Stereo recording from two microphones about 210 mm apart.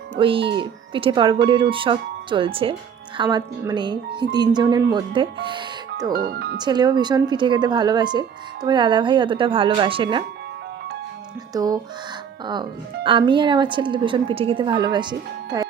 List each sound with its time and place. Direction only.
0.2 s speech: 25° right (ahead or behind)
6.1 s speech: 50° right (ahead or behind)
6.6 s speech: 20° right (ahead or behind)
11.5 s speech: 15° right (ahead or behind)
13.1 s speech: 25° right (ahead or behind)